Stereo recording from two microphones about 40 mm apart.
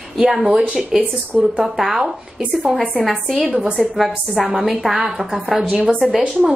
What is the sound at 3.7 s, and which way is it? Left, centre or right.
A woman's voice, centre.